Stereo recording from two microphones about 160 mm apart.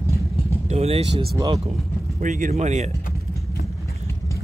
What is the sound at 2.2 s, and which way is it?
Speech, 55° right (ahead or behind).